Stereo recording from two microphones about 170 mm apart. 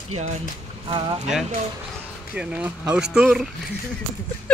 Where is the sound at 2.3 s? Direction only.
10° right (ahead or behind).